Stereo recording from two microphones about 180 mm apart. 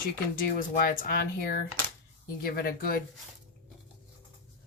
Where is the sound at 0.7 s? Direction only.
55° left (ahead or behind).